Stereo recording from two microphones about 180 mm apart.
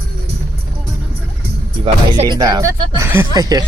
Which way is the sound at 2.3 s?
20° right (ahead or behind).